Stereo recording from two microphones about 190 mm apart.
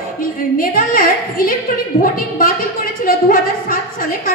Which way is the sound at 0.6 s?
50° left (ahead or behind).